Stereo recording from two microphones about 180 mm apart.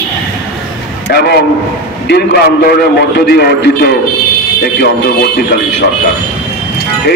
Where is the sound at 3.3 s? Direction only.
60° left (ahead or behind).